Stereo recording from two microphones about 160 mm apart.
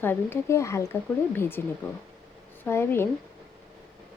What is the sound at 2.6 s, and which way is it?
Speech, 15° left (ahead or behind).